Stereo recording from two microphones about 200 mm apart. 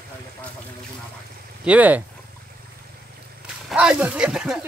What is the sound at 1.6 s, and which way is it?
Speech, 5° right (ahead or behind).